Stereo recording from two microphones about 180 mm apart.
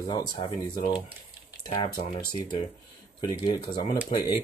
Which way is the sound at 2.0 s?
30° left (ahead or behind).